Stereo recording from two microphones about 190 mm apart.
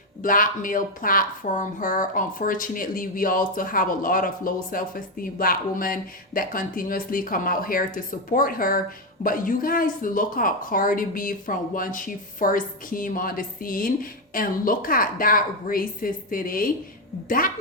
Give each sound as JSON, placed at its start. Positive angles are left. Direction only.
{"t": 0.2, "sound": "speech", "side_deg": 45}